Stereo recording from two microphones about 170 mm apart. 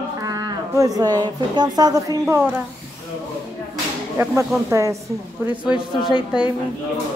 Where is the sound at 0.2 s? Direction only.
20° right (ahead or behind).